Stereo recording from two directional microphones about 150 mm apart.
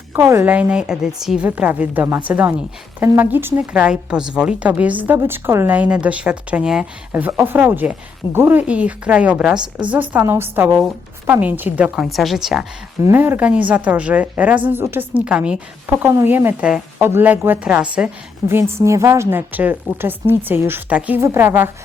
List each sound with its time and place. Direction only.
0.1 s a woman's voice: 20° right (ahead or behind)
13.0 s a woman's voice: 15° right (ahead or behind)